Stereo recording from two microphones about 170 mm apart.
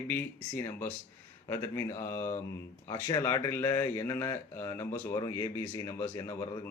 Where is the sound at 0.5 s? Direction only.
10° left (ahead or behind).